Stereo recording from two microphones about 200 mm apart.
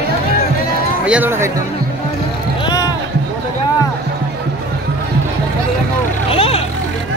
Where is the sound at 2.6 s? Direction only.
20° left (ahead or behind).